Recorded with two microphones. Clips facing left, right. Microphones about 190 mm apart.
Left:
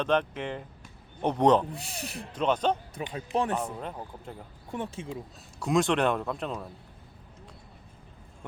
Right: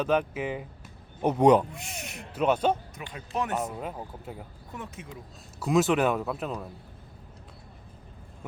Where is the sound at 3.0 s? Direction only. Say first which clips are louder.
Left 6 dB; 30° left (ahead or behind).